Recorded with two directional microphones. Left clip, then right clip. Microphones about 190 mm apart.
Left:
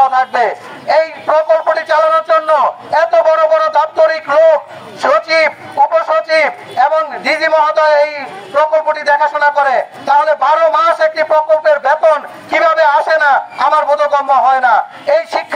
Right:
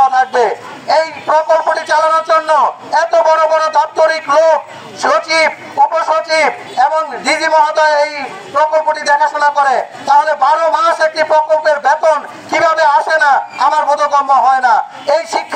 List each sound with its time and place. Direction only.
0.0 s a man's voice: 20° left (ahead or behind)